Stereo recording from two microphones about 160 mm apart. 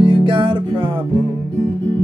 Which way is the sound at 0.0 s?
30° right (ahead or behind).